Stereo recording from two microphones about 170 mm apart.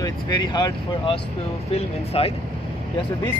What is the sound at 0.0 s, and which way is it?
Speech, 25° left (ahead or behind).